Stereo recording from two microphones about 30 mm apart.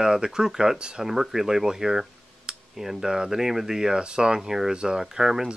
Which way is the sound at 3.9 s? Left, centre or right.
Right.